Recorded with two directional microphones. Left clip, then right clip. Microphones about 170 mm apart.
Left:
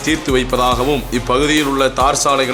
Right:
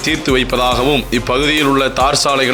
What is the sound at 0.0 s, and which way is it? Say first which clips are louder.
A man's voice: right 2 dB; 15° right (ahead or behind).